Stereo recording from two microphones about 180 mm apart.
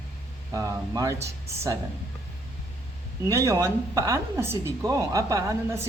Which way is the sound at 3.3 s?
15° right (ahead or behind).